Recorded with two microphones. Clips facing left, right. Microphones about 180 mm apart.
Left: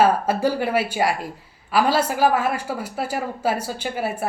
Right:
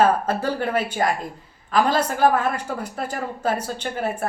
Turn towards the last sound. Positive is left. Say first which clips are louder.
# even
turn(degrees=10)  # may be behind; listen again after turning